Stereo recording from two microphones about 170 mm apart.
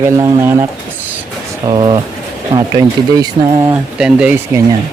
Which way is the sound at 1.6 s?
30° right (ahead or behind).